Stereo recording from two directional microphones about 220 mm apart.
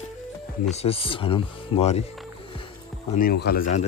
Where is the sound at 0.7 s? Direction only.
25° left (ahead or behind).